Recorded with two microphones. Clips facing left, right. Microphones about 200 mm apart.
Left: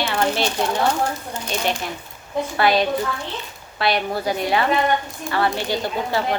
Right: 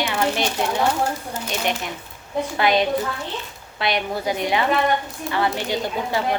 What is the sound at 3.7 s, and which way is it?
Speech, 20° right (ahead or behind).